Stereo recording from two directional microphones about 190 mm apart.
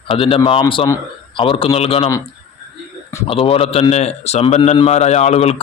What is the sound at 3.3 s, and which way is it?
A man's voice, 30° left (ahead or behind).